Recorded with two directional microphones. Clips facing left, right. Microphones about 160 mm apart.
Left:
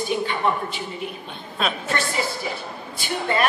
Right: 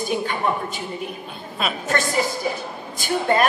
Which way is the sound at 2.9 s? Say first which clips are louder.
Right 4 dB; 45° right (ahead or behind).